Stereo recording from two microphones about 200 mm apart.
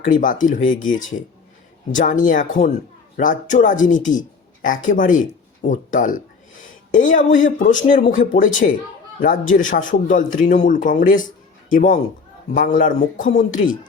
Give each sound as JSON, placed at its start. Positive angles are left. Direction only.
{"t": 0.0, "sound": "a man's voice", "side_deg": 40}